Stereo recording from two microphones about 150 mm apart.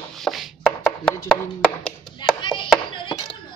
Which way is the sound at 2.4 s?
35° left (ahead or behind).